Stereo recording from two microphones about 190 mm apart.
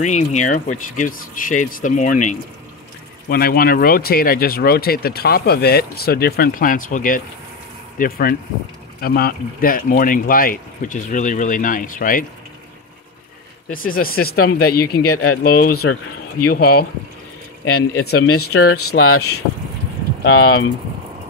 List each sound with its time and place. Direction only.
0.0 s speech: 40° left (ahead or behind)
3.3 s speech: 50° left (ahead or behind)
13.7 s speech: 50° left (ahead or behind)
17.9 s speech: 90° left
20.2 s speech: 90° left